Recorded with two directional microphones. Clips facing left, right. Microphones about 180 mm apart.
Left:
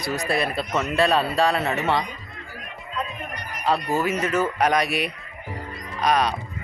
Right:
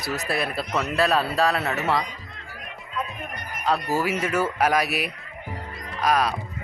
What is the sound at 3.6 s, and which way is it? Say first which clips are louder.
Speech: left 1 dB; 5° right (ahead or behind).